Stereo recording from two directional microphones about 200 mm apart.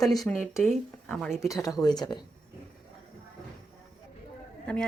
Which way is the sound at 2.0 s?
20° left (ahead or behind).